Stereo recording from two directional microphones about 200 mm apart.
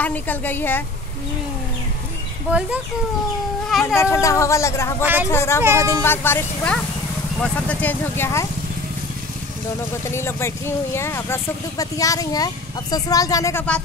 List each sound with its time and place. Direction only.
0.0 s speech: 10° left (ahead or behind)
2.5 s speech: 5° right (ahead or behind)
3.9 s speech: 15° left (ahead or behind)
5.0 s speech: 10° right (ahead or behind)
5.3 s speech: 15° left (ahead or behind)
5.6 s speech: 15° right (ahead or behind)
6.0 s speech: 10° left (ahead or behind)
10.1 s speech: 10° left (ahead or behind)